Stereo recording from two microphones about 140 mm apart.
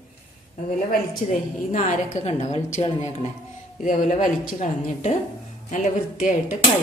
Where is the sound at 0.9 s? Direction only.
65° left (ahead or behind).